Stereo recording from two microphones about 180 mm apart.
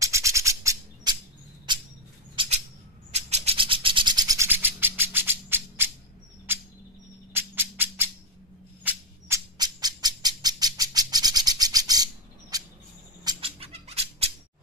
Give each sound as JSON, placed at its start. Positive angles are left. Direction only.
{"t": 0.0, "sound": "bird", "side_deg": -15}
{"t": 1.7, "sound": "rodents", "side_deg": -25}
{"t": 3.1, "sound": "a sound", "side_deg": -35}
{"t": 7.3, "sound": "music", "side_deg": -10}
{"t": 8.8, "sound": "bird", "side_deg": -20}
{"t": 13.2, "sound": "a sound", "side_deg": -25}